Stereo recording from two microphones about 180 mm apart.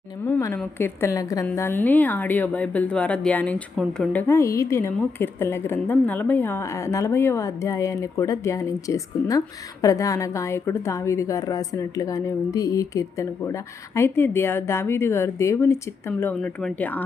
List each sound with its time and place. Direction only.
0.3 s speech: 15° left (ahead or behind)